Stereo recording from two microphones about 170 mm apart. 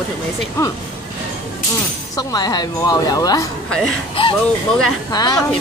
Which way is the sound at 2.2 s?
20° left (ahead or behind).